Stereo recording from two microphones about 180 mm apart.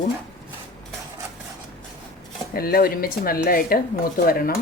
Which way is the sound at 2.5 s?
55° left (ahead or behind).